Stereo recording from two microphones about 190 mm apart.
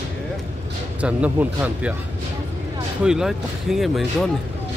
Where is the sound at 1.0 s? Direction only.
10° right (ahead or behind).